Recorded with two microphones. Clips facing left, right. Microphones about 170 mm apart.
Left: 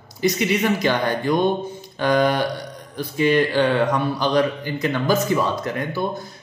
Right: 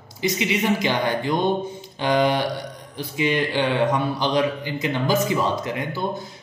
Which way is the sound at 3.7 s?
20° right (ahead or behind).